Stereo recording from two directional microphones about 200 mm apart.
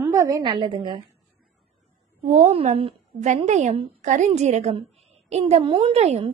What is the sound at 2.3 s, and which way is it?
A woman's voice, 35° right (ahead or behind).